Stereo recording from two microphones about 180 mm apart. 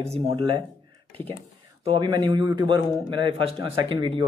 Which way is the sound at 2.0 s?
25° right (ahead or behind).